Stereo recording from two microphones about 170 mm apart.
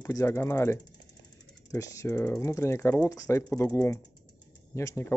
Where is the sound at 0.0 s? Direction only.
15° left (ahead or behind).